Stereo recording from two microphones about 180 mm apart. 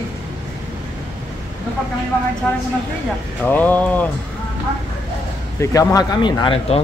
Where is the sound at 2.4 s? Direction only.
5° left (ahead or behind).